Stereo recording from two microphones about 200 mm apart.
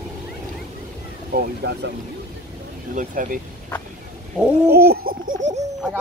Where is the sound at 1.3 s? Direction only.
55° right (ahead or behind).